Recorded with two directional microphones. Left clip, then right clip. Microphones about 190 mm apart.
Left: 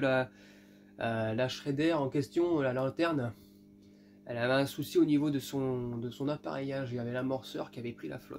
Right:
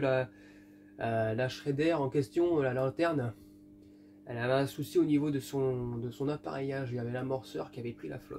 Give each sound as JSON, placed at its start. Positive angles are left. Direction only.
{"t": 0.0, "sound": "speech", "side_deg": 30}
{"t": 4.3, "sound": "speech", "side_deg": 30}